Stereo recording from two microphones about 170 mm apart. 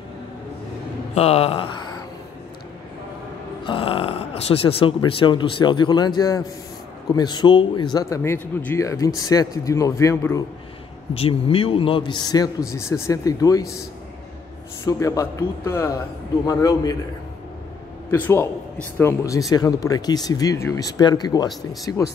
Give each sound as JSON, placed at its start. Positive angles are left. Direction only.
{"t": 1.1, "sound": "a sound", "side_deg": 35}
{"t": 3.6, "sound": "a man's voice", "side_deg": 30}
{"t": 11.1, "sound": "a man's voice", "side_deg": 35}
{"t": 14.9, "sound": "a man's voice", "side_deg": 20}
{"t": 18.1, "sound": "a man's voice", "side_deg": 15}